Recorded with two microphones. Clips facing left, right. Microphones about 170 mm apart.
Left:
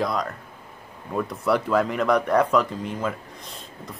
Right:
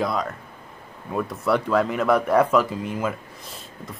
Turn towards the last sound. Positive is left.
turn(degrees=-5)  # may be behind; listen again after turning